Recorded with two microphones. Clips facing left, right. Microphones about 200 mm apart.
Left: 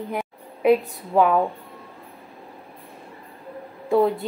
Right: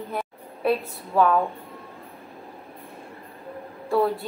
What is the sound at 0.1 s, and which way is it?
A woman's voice, 15° left (ahead or behind).